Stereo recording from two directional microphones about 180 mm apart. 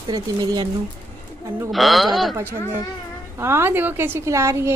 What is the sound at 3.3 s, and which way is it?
A woman's voice, 15° right (ahead or behind).